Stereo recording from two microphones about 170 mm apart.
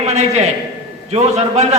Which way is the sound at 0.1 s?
40° right (ahead or behind).